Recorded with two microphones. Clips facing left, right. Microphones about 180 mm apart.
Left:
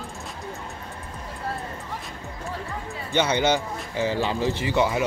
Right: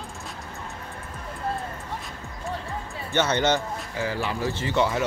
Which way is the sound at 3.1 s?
10° left (ahead or behind).